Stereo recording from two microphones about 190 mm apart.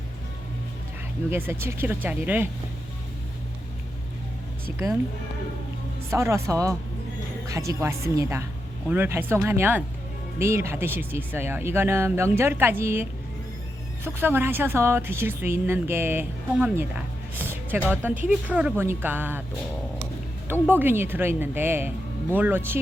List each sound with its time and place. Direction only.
1.3 s a woman's voice: 10° right (ahead or behind)
6.1 s a woman's voice: 15° right (ahead or behind)
20.5 s a woman's voice: 10° right (ahead or behind)